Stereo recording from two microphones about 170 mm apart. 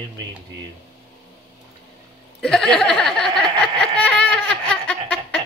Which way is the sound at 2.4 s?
5° left (ahead or behind).